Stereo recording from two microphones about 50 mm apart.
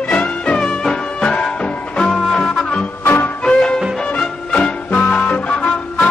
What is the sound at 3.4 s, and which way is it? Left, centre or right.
Music, centre.